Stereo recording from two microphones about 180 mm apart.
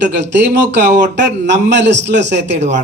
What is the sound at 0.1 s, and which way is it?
A man's voice, 75° right (ahead or behind).